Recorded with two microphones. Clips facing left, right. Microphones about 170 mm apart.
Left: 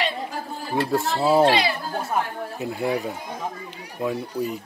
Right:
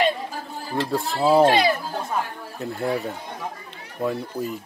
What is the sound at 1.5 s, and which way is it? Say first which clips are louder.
Speech: right 2 dB; 50° right (ahead or behind).